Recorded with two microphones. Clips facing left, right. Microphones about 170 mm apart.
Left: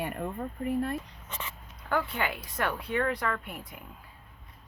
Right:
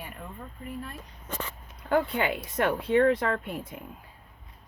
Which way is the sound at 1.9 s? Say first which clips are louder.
Right 5 dB; 20° right (ahead or behind).